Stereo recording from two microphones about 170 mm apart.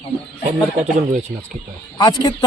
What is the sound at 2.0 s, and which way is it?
Speech, 20° left (ahead or behind).